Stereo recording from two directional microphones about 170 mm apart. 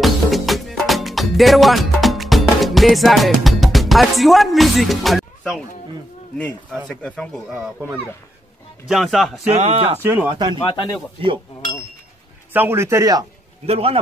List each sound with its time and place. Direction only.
0.0 s music: centre (ahead or behind)
6.3 s speech: 5° left (ahead or behind)
9.6 s speech: 40° right (ahead or behind)
10.0 s speech: 20° right (ahead or behind)
12.5 s a man's voice: 15° right (ahead or behind)
13.7 s speech: 35° right (ahead or behind)